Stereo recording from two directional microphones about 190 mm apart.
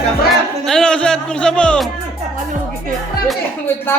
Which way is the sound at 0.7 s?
5° left (ahead or behind).